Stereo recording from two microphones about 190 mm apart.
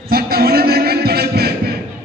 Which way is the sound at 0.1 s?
55° right (ahead or behind).